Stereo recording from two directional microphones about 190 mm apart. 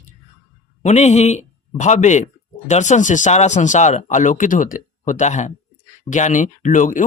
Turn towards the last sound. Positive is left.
turn(degrees=40)  # may be behind; listen again after turning